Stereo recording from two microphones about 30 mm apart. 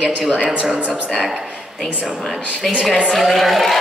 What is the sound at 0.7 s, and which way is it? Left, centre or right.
Speech, right.